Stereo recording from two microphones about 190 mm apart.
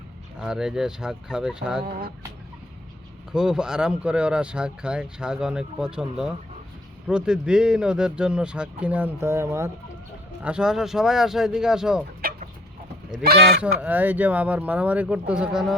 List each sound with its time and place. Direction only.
0.3 s speech: 5° right (ahead or behind)
1.9 s speech: 50° right (ahead or behind)
3.3 s speech: 5° right (ahead or behind)
12.2 s chicken: 50° right (ahead or behind)
13.1 s speech: 55° right (ahead or behind)
13.6 s speech: 10° right (ahead or behind)